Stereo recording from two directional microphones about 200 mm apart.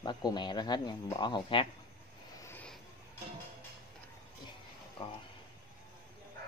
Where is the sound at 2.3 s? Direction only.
10° left (ahead or behind).